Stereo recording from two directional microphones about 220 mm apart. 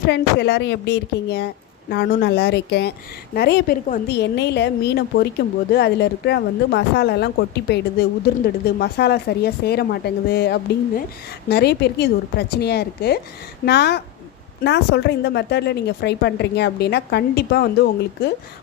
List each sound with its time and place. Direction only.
0.0 s a woman's voice: 50° left (ahead or behind)